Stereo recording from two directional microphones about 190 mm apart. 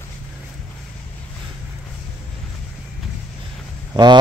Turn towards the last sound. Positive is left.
turn(degrees=-25)  # may be behind; listen again after turning